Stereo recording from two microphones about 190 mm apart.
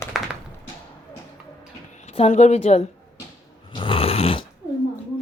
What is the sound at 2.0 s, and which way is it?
Speech, 35° left (ahead or behind).